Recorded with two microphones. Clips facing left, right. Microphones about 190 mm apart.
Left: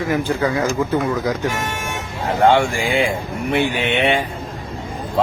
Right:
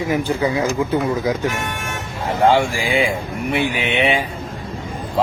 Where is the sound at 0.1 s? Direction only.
15° right (ahead or behind).